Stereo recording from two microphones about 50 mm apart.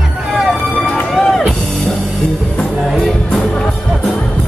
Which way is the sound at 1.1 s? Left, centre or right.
Centre.